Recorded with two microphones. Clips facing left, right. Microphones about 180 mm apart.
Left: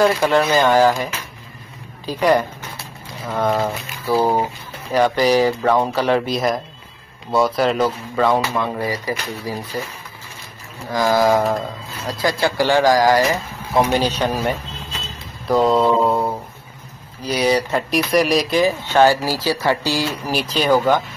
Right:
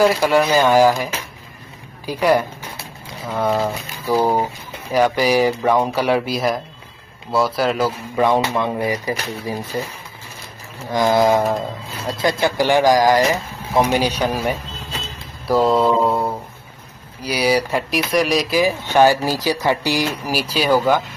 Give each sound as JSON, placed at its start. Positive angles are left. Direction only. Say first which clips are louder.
{"t": 0.0, "sound": "speech", "louder": "right 1 dB", "side_deg": -10}
{"t": 7.2, "sound": "mantra", "louder": "left 1 dB", "side_deg": 0}
{"t": 8.2, "sound": "speech", "louder": "right 1 dB", "side_deg": -20}
{"t": 10.9, "sound": "speech", "louder": "right 1 dB", "side_deg": -20}
{"t": 15.4, "sound": "mantra", "louder": "even", "side_deg": 0}
{"t": 17.2, "sound": "speech", "louder": "even", "side_deg": -10}